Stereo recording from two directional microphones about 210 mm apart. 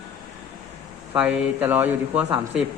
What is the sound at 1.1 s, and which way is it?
Speech, 5° right (ahead or behind).